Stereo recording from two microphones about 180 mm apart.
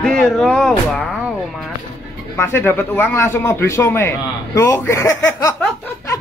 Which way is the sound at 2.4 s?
15° left (ahead or behind).